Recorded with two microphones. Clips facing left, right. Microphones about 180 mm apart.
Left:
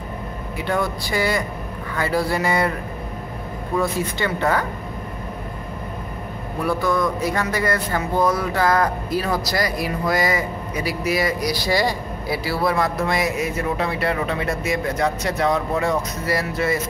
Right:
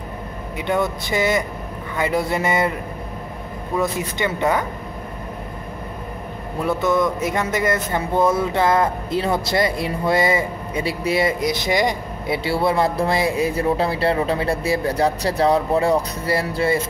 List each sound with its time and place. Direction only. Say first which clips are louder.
0.6 s speech: right 2 dB; 20° right (ahead or behind)
3.7 s speech: even; 20° right (ahead or behind)
6.6 s speech: right 2 dB; 20° right (ahead or behind)